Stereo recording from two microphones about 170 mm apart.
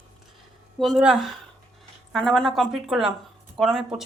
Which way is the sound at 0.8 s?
Centre (ahead or behind).